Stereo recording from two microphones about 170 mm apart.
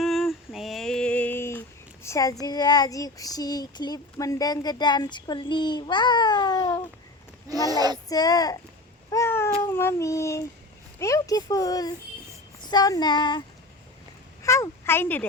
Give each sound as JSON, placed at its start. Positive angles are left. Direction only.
{"t": 0.0, "sound": "a sound", "side_deg": 0}
{"t": 2.0, "sound": "child singing", "side_deg": 20}
{"t": 7.7, "sound": "speech", "side_deg": -20}
{"t": 8.1, "sound": "child singing", "side_deg": 20}
{"t": 9.0, "sound": "cat", "side_deg": 15}
{"t": 9.6, "sound": "child singing", "side_deg": 15}
{"t": 14.4, "sound": "speech", "side_deg": 15}